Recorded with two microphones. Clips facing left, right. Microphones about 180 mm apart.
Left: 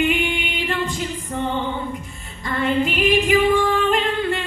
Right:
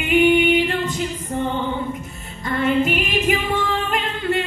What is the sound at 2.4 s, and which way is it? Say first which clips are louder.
Music: right 2 dB; 45° right (ahead or behind).